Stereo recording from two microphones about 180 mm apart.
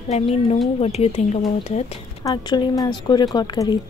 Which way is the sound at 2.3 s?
20° left (ahead or behind).